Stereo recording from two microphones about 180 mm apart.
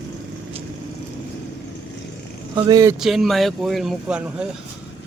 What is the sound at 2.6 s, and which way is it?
Speech, 20° right (ahead or behind).